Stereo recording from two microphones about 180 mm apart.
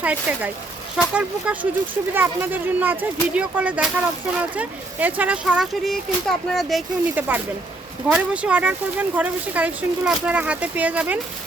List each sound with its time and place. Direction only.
0.0 s speech: 10° right (ahead or behind)